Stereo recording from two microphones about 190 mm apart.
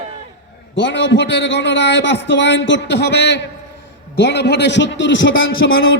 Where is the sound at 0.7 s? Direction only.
70° left (ahead or behind); by 5.5 s 85° left.